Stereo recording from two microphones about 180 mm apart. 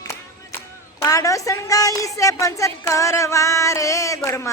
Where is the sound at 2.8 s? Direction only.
15° left (ahead or behind).